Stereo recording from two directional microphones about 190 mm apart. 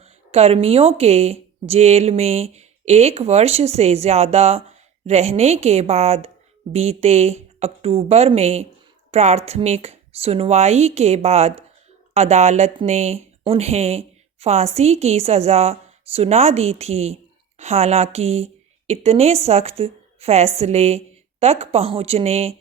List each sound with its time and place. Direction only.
0.0 s a woman's voice: 35° right (ahead or behind)